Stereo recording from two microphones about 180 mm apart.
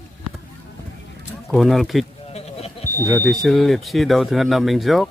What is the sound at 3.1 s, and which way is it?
Speech, centre (ahead or behind).